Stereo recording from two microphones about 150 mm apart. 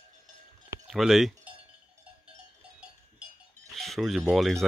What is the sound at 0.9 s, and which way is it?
Speech, centre (ahead or behind).